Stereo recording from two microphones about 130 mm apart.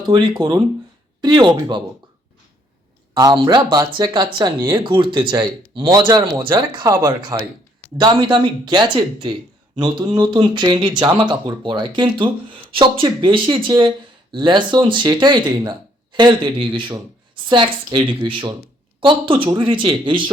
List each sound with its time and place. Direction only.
0.1 s speech: 35° right (ahead or behind)
3.3 s speech: 40° right (ahead or behind)